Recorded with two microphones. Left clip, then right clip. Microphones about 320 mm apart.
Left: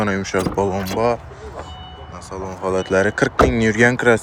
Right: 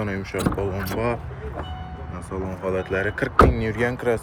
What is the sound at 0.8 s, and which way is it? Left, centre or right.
Speech, centre.